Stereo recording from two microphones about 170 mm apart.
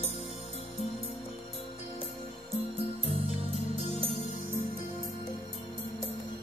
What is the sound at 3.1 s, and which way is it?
Music, 35° right (ahead or behind).